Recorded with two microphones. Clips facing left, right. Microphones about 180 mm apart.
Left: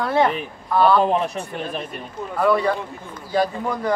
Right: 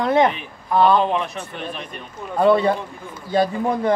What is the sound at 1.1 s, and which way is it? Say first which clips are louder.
Speech: left 2 dB; 40° left (ahead or behind).